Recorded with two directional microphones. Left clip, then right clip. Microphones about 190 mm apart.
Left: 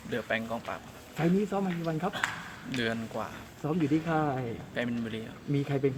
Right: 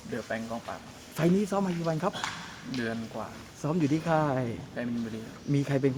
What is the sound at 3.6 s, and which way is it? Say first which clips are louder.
Speech: right 1 dB; 60° right (ahead or behind).